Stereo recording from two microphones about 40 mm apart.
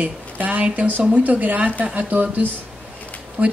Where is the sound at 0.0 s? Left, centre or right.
Right.